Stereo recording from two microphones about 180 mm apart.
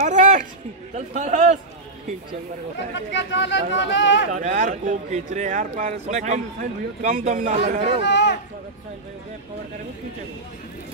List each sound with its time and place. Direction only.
0.0 s a sound: 45° right (ahead or behind)
0.9 s a man's voice: 40° right (ahead or behind)
2.9 s speech: 80° left
4.3 s a man's voice: 45° right (ahead or behind)
8.0 s speech: 75° left (ahead or behind)